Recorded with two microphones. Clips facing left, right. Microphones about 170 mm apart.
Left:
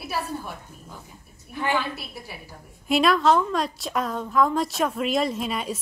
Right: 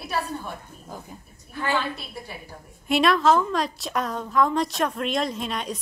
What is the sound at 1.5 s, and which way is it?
Speech, 15° left (ahead or behind).